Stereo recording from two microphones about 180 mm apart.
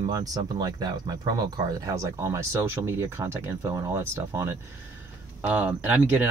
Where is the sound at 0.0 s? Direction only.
20° right (ahead or behind).